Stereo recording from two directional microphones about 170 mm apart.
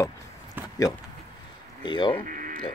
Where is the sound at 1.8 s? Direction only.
25° left (ahead or behind).